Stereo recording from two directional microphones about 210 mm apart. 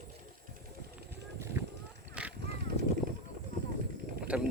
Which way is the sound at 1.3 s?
15° right (ahead or behind).